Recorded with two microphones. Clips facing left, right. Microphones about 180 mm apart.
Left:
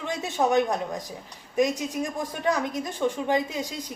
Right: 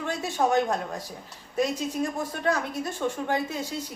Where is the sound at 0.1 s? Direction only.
20° left (ahead or behind).